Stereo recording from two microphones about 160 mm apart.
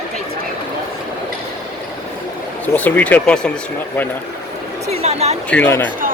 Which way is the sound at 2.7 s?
10° left (ahead or behind).